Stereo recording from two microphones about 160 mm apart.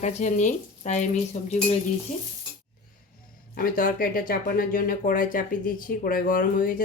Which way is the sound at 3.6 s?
60° left (ahead or behind).